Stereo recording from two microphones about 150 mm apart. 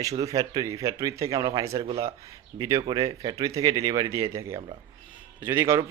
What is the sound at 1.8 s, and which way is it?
Speech, 40° right (ahead or behind).